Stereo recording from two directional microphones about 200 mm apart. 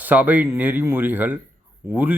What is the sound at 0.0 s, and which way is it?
A man's voice, 10° right (ahead or behind).